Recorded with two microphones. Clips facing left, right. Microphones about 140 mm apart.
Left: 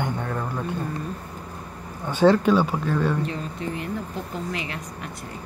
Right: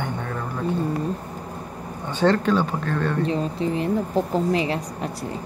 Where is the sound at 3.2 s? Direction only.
30° right (ahead or behind).